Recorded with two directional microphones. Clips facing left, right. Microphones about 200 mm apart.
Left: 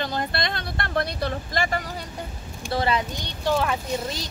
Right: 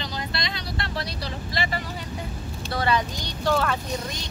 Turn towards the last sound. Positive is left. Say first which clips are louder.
# even
turn(degrees=15)  # may be behind; listen again after turning